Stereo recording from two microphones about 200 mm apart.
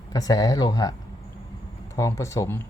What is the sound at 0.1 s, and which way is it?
Speech, 15° left (ahead or behind).